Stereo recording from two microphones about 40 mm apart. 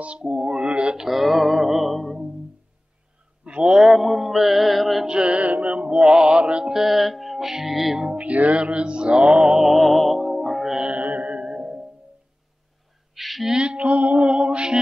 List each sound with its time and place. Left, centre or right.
0.0 s speech: right
1.0 s music: centre
3.6 s a sound: centre
3.9 s music: centre
5.0 s music: right
6.7 s music: centre
8.2 s music: right
9.6 s music: centre
10.9 s music: right
11.4 s music: centre
13.1 s a sound: centre
13.6 s mantra: right
14.3 s music: right